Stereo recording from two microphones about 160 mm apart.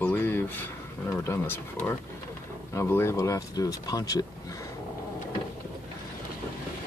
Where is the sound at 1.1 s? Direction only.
15° left (ahead or behind).